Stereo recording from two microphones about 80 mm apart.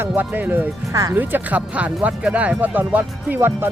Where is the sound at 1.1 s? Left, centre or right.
Right.